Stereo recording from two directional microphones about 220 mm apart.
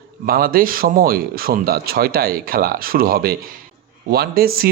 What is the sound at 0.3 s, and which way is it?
Speech, 40° right (ahead or behind).